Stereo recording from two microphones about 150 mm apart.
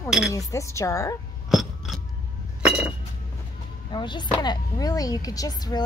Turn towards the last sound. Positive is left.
turn(degrees=25)  # may be behind; listen again after turning